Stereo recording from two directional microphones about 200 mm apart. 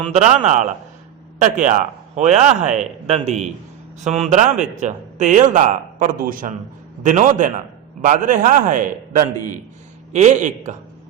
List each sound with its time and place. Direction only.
0.1 s speech: 35° right (ahead or behind)